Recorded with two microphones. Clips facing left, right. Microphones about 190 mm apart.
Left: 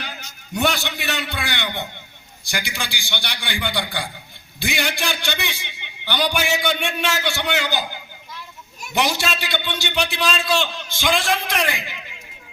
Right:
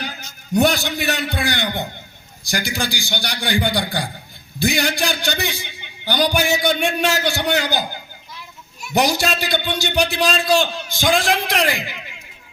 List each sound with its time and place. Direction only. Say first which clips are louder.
0.5 s a man's voice: right 5 dB; 40° right (ahead or behind)
8.9 s a man's voice: right 4 dB; 40° right (ahead or behind)